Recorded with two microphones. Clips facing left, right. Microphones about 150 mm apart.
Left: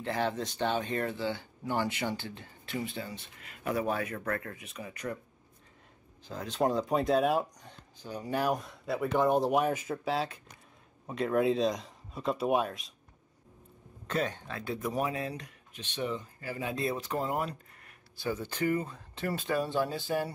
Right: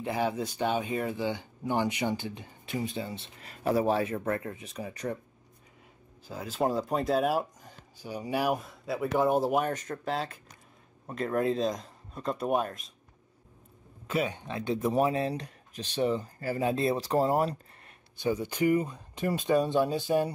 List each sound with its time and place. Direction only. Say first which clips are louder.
0.0 s speech: right 2 dB; 10° right (ahead or behind); by 5.0 s 35° right (ahead or behind)
6.2 s speech: even; 5° right (ahead or behind)
14.0 s speech: right 2 dB; 10° right (ahead or behind); by 17.9 s 35° right (ahead or behind)
18.1 s speech: right 5 dB; 15° right (ahead or behind)